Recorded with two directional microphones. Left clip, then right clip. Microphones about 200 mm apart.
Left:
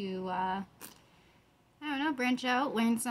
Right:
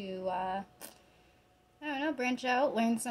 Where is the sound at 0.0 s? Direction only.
35° left (ahead or behind).